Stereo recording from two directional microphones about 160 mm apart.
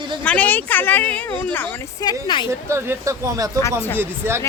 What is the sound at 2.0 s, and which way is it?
Speech, 30° left (ahead or behind).